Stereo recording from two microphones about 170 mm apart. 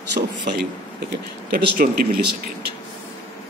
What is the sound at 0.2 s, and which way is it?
Speech, 50° right (ahead or behind).